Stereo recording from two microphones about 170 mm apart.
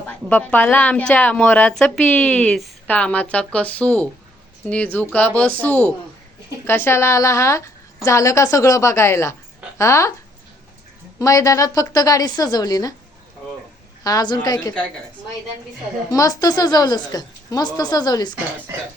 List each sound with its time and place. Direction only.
0.1 s a woman's voice: 10° left (ahead or behind)
11.2 s a woman's voice: 20° left (ahead or behind)
14.0 s a woman's voice: 20° left (ahead or behind)
16.1 s a woman's voice: 20° left (ahead or behind)